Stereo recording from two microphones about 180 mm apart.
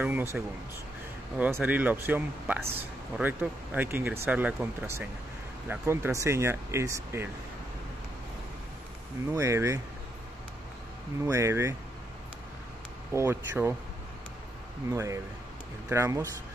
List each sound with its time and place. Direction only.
0.0 s speech: 10° right (ahead or behind)
1.4 s speech: 10° right (ahead or behind)
9.3 s speech: 15° right (ahead or behind)
11.2 s speech: 15° right (ahead or behind)
13.1 s speech: 15° right (ahead or behind)
14.9 s speech: 15° right (ahead or behind)